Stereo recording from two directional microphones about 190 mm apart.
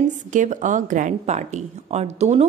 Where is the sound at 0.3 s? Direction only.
40° right (ahead or behind).